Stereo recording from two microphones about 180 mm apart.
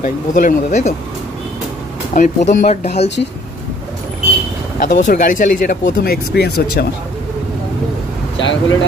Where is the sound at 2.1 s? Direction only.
45° left (ahead or behind).